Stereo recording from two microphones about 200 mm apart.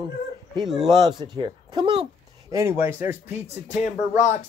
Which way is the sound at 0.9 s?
20° right (ahead or behind).